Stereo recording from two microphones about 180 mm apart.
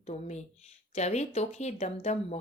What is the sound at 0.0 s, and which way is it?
Speech, 40° left (ahead or behind).